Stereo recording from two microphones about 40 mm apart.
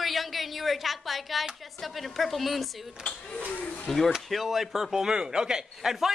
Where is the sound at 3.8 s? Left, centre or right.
Centre.